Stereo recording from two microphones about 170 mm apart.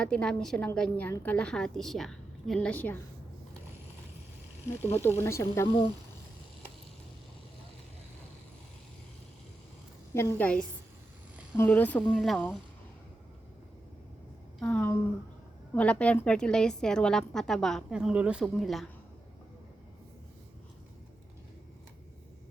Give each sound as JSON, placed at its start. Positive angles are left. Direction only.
{"t": 0.0, "sound": "a woman's voice", "side_deg": 5}
{"t": 4.9, "sound": "speech", "side_deg": 15}
{"t": 10.2, "sound": "speech", "side_deg": 15}
{"t": 14.6, "sound": "a woman's voice", "side_deg": 10}